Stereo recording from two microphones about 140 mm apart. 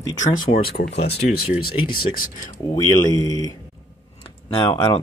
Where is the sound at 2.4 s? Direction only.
25° left (ahead or behind).